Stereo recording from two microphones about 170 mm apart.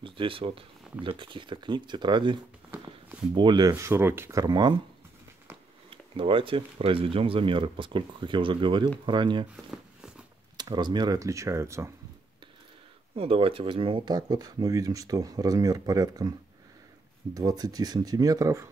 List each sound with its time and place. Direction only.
0.0 s speech: 30° right (ahead or behind)
3.3 s speech: 25° right (ahead or behind)
5.9 s speech: 30° right (ahead or behind)
9.7 s a sound: 5° right (ahead or behind)
10.6 s speech: 25° right (ahead or behind)
13.1 s speech: 35° right (ahead or behind)